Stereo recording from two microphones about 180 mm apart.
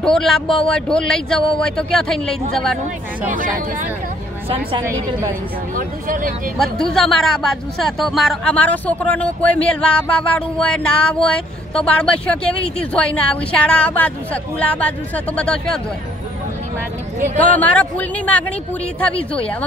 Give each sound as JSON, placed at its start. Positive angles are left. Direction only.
{"t": 0.0, "sound": "speech", "side_deg": 0}
{"t": 3.3, "sound": "speech", "side_deg": -45}
{"t": 4.5, "sound": "a woman's voice", "side_deg": -30}
{"t": 5.8, "sound": "speech", "side_deg": -50}
{"t": 6.6, "sound": "speech", "side_deg": 0}
{"t": 17.6, "sound": "speech", "side_deg": 10}